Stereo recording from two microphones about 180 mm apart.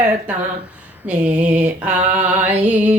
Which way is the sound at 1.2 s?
10° right (ahead or behind).